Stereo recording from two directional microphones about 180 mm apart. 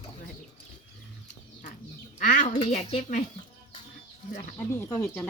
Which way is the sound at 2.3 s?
45° left (ahead or behind).